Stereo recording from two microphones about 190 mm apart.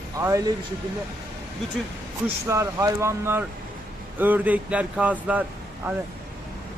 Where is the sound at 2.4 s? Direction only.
15° right (ahead or behind).